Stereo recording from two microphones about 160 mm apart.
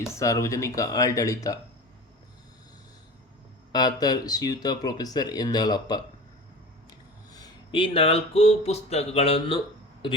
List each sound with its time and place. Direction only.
0.1 s speech: 20° left (ahead or behind)
3.7 s speech: 25° left (ahead or behind)
7.3 s speech: 30° left (ahead or behind)